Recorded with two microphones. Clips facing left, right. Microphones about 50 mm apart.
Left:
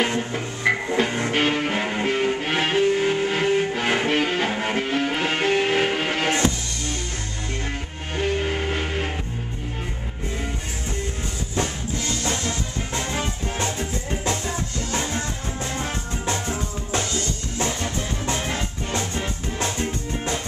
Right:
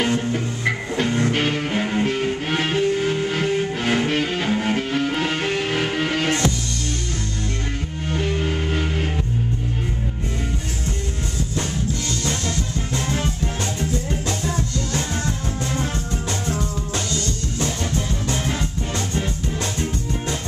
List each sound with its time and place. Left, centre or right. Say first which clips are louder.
0.8 s music: right 1 dB; centre
8.1 s music: even; centre
12.2 s music: right 1 dB; left
16.9 s music: left 4 dB; left
19.6 s music: left 3 dB; left